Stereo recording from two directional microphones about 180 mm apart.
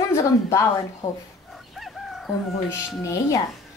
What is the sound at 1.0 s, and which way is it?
Bird, 25° left (ahead or behind).